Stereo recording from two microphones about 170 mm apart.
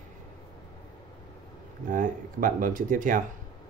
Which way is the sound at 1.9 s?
50° right (ahead or behind).